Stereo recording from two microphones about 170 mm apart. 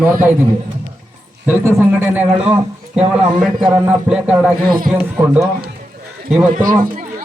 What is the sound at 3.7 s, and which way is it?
Speech, 10° right (ahead or behind).